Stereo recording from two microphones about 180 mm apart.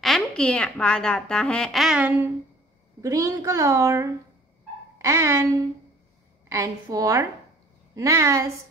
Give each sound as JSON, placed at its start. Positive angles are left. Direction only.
{"t": 0.0, "sound": "a woman's voice", "side_deg": 5}